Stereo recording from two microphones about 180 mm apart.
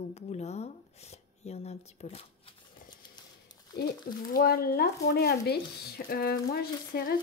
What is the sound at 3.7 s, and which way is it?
Speech, 60° left (ahead or behind).